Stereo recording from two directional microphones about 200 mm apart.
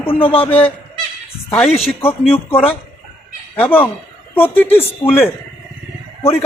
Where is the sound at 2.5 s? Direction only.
10° left (ahead or behind).